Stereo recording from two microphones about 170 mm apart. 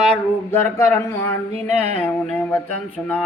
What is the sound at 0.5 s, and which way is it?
Speech, 15° left (ahead or behind).